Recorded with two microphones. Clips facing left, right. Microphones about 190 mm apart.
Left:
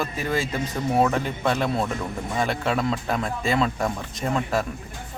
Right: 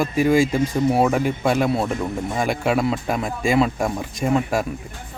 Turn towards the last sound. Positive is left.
turn(degrees=-10)  # may be behind; listen again after turning